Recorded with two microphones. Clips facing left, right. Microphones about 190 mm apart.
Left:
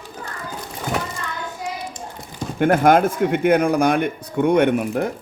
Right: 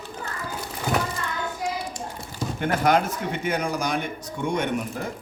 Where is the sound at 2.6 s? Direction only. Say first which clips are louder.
Left 7 dB; 50° left (ahead or behind).